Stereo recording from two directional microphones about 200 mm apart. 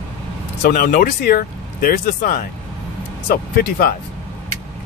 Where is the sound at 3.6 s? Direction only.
50° left (ahead or behind).